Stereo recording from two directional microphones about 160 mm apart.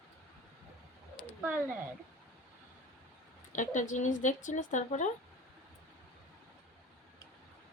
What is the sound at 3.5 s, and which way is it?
Speech, 50° left (ahead or behind).